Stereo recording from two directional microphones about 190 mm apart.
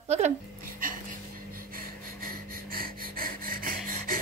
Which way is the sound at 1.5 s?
50° right (ahead or behind).